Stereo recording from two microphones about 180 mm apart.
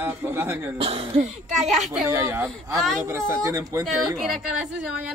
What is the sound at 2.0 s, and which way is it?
A man's voice, 15° right (ahead or behind).